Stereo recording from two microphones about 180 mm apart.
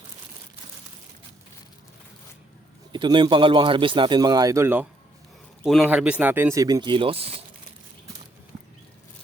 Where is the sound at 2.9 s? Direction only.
25° right (ahead or behind).